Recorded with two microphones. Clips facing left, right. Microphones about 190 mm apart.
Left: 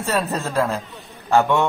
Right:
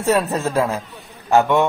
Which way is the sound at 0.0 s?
15° right (ahead or behind).